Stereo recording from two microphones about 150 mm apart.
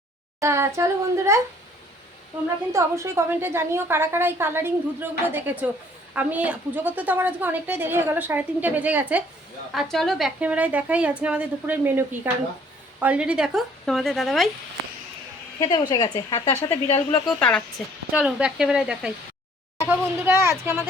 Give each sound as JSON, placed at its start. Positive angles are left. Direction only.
{"t": 0.3, "sound": "speech", "side_deg": -20}
{"t": 2.7, "sound": "a woman's voice", "side_deg": -20}
{"t": 9.7, "sound": "a woman's voice", "side_deg": 0}
{"t": 15.6, "sound": "a woman's voice", "side_deg": 30}
{"t": 18.1, "sound": "speech", "side_deg": -5}
{"t": 19.9, "sound": "a woman's voice", "side_deg": -15}